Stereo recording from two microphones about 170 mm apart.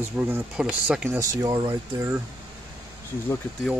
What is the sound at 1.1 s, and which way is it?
Speech, 20° right (ahead or behind).